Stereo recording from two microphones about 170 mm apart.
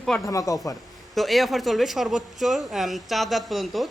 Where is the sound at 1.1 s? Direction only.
Centre (ahead or behind).